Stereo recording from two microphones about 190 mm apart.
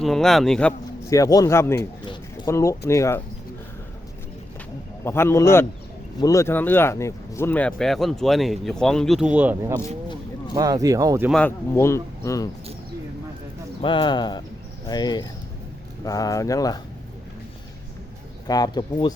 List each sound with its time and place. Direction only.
0.0 s speech: centre (ahead or behind)
1.1 s speech: 20° left (ahead or behind)
5.0 s speech: 15° left (ahead or behind); by 9.8 s 10° right (ahead or behind)
10.5 s speech: 20° right (ahead or behind)
11.3 s speech: 5° left (ahead or behind)
13.8 s speech: 25° left (ahead or behind)
18.4 s speech: 20° left (ahead or behind)